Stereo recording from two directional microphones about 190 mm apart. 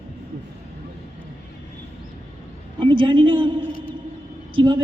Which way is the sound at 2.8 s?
25° right (ahead or behind).